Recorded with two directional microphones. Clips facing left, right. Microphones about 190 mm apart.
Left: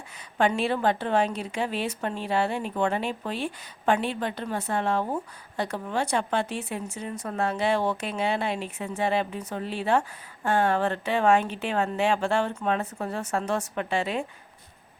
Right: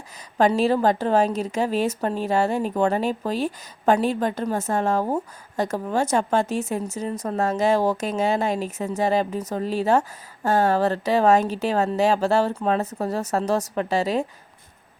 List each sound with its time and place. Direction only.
0.3 s a woman's voice: 40° right (ahead or behind)